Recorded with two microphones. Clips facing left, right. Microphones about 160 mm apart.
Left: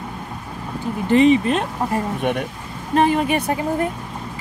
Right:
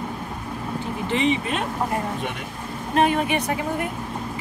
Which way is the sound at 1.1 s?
40° left (ahead or behind).